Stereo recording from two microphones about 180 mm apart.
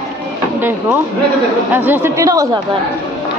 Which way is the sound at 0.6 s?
10° right (ahead or behind).